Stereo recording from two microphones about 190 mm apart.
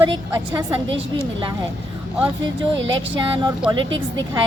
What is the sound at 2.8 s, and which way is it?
Speech, 80° right.